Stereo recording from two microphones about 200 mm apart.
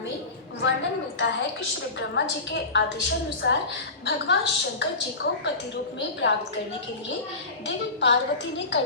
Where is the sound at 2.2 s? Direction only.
65° left (ahead or behind).